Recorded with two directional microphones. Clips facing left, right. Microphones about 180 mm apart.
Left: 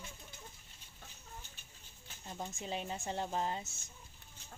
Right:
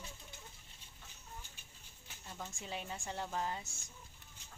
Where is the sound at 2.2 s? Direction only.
20° left (ahead or behind).